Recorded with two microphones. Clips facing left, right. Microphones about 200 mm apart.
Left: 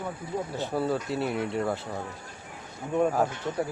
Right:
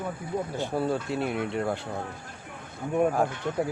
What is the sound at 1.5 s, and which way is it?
Speech, centre (ahead or behind).